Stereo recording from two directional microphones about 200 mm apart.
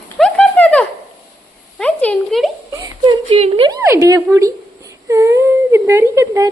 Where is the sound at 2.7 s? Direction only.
20° right (ahead or behind).